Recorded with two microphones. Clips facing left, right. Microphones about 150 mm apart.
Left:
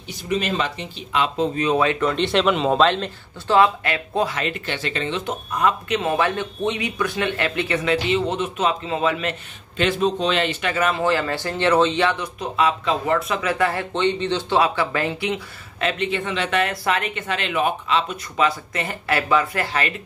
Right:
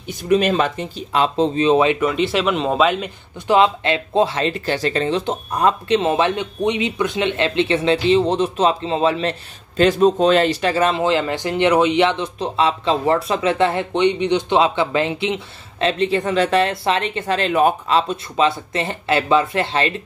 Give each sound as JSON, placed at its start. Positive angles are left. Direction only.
{"t": 0.1, "sound": "speech", "side_deg": -55}
{"t": 2.0, "sound": "speech", "side_deg": -5}
{"t": 18.1, "sound": "speech", "side_deg": -25}